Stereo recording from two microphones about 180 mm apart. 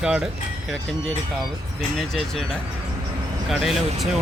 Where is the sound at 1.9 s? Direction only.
Centre (ahead or behind).